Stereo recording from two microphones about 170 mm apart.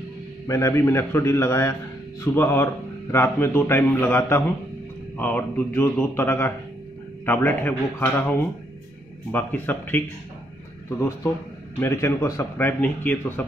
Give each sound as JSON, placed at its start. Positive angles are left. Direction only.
{"t": 0.5, "sound": "a man's voice", "side_deg": 15}
{"t": 11.8, "sound": "a man's voice", "side_deg": 15}